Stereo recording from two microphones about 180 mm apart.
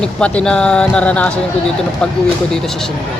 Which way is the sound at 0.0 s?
5° left (ahead or behind).